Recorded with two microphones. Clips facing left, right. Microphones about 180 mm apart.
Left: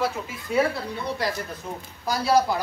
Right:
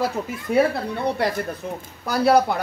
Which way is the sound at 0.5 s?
55° right (ahead or behind).